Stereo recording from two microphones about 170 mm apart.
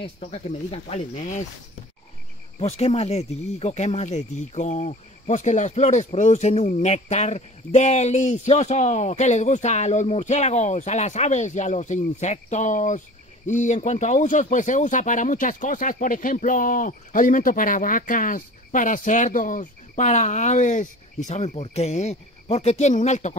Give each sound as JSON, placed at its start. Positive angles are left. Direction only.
{"t": 0.0, "sound": "speech", "side_deg": 35}
{"t": 2.6, "sound": "speech", "side_deg": 40}